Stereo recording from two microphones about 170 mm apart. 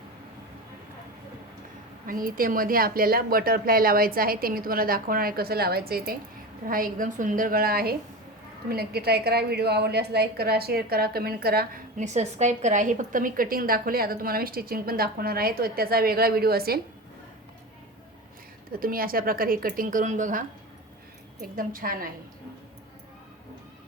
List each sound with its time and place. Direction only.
2.0 s a woman's voice: 55° right (ahead or behind)
11.9 s a woman's voice: 45° right (ahead or behind); by 16.8 s 65° right (ahead or behind)
18.7 s a woman's voice: 60° right (ahead or behind)
21.4 s a woman's voice: 55° right (ahead or behind)